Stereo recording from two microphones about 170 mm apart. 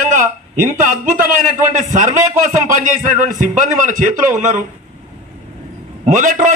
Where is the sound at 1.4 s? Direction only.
50° right (ahead or behind).